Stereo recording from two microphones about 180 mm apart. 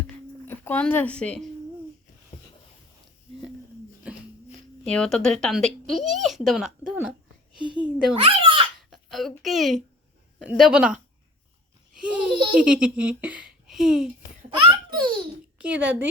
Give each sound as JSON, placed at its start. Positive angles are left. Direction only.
{"t": 0.4, "sound": "speech", "side_deg": 10}
{"t": 4.1, "sound": "a sound", "side_deg": -5}
{"t": 4.9, "sound": "speech", "side_deg": 5}
{"t": 8.1, "sound": "babbling", "side_deg": -30}
{"t": 8.9, "sound": "a child's voice", "side_deg": 0}
{"t": 14.6, "sound": "baby laughter", "side_deg": -25}
{"t": 15.5, "sound": "a woman's voice", "side_deg": -10}